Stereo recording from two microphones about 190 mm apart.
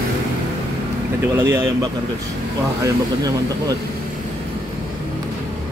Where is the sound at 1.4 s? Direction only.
15° right (ahead or behind).